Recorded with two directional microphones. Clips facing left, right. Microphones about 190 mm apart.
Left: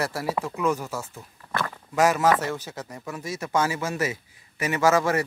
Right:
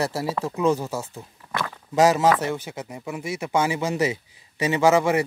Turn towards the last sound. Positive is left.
turn(degrees=-15)  # may be behind; listen again after turning